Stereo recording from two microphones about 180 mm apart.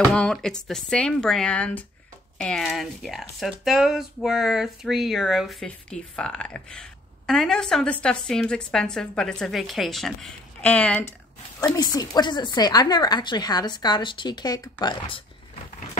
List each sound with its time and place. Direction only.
0.1 s speech: 5° left (ahead or behind)
11.6 s speech: 20° left (ahead or behind)